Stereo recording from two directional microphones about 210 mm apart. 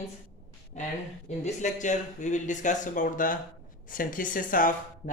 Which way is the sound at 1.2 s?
35° left (ahead or behind).